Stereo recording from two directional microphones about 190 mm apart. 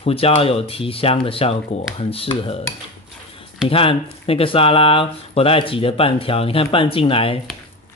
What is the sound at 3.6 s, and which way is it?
Speech, 30° left (ahead or behind).